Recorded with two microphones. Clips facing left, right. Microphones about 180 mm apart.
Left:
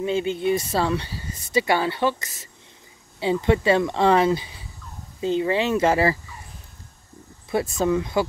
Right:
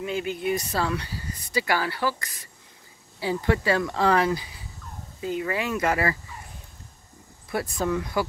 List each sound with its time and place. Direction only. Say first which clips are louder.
0.0 s speech: left 5 dB; 25° left (ahead or behind)
7.5 s speech: left 5 dB; 25° left (ahead or behind)